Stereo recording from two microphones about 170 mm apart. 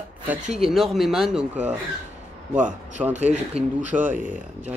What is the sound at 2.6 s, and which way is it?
Speech, 45° right (ahead or behind).